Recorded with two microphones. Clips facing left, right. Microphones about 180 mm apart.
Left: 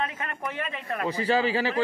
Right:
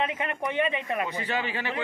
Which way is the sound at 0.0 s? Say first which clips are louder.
Right 3 dB; 20° right (ahead or behind).